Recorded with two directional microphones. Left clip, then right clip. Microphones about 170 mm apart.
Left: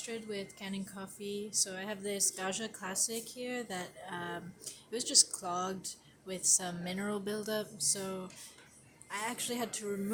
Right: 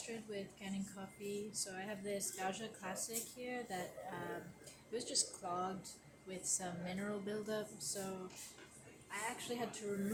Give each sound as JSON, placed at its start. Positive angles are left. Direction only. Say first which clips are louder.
{"t": 0.1, "sound": "a woman's voice", "louder": "left 7 dB", "side_deg": 70}